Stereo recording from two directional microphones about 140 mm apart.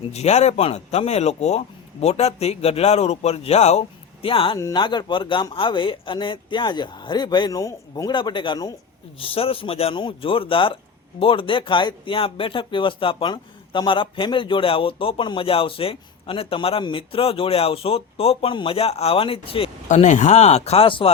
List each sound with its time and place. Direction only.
0.1 s speech: 50° left (ahead or behind)
4.5 s speech: 30° left (ahead or behind)
9.2 s speech: 40° left (ahead or behind)
19.9 s speech: 60° left (ahead or behind); by 21.1 s 40° left (ahead or behind)